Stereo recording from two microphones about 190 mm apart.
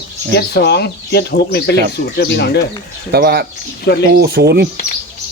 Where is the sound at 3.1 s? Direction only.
55° right (ahead or behind).